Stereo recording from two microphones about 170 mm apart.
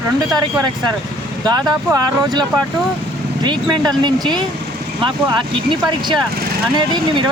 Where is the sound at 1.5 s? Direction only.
25° right (ahead or behind).